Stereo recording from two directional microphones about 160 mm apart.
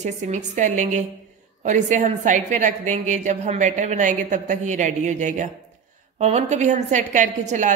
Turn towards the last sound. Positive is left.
turn(degrees=-50)  # may be behind; listen again after turning